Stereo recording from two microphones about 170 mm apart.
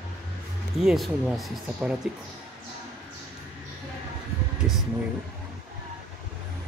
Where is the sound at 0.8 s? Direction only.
Centre (ahead or behind).